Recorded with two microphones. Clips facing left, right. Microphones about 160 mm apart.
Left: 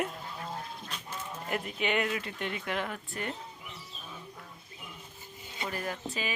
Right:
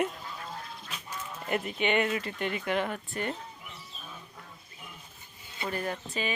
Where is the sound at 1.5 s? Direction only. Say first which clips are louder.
Right 3 dB; centre (ahead or behind).